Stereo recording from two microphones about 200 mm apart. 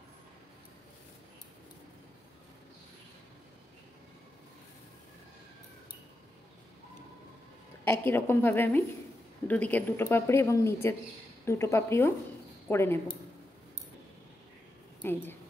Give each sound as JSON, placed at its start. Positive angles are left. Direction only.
{"t": 7.8, "sound": "speech", "side_deg": 10}
{"t": 15.0, "sound": "speech", "side_deg": 10}